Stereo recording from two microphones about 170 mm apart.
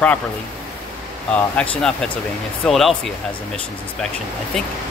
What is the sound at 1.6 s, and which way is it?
Speech, 5° left (ahead or behind).